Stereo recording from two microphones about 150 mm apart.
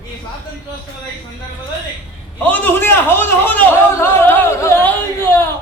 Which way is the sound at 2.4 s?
10° left (ahead or behind).